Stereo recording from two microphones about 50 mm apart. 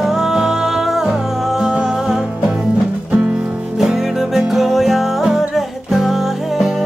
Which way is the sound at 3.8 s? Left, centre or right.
Centre.